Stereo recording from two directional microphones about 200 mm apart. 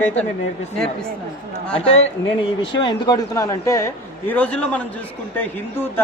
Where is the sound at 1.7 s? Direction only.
30° left (ahead or behind).